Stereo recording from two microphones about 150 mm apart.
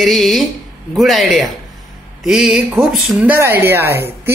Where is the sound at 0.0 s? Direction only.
Centre (ahead or behind).